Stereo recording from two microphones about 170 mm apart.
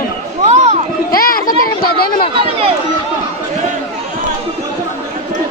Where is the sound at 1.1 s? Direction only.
60° left (ahead or behind).